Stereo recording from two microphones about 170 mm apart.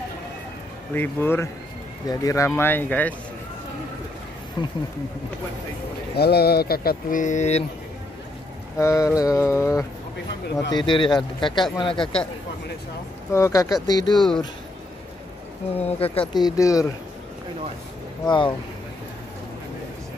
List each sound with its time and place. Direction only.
0.9 s mantra: 15° left (ahead or behind)
4.6 s speech: 25° left (ahead or behind)
6.1 s speech: 70° left (ahead or behind); by 7.6 s 45° left (ahead or behind)
8.7 s mantra: 20° left (ahead or behind)
10.7 s speech: 25° left (ahead or behind)
13.3 s speech: 20° left (ahead or behind)
14.1 s speech: centre (ahead or behind)
15.8 s speech: 35° left (ahead or behind)
18.2 s speech: 30° left (ahead or behind)